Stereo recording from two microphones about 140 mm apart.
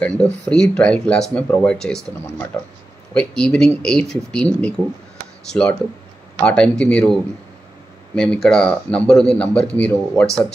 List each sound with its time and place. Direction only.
0.2 s speech: 5° left (ahead or behind)
2.5 s speech: 15° left (ahead or behind)